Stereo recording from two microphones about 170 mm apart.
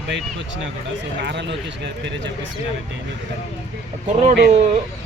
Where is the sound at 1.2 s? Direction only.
90° right.